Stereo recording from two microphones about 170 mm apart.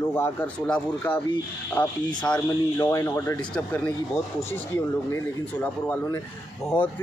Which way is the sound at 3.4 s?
5° left (ahead or behind).